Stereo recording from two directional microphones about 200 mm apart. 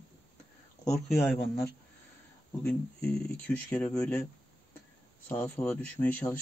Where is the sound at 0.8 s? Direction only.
5° left (ahead or behind).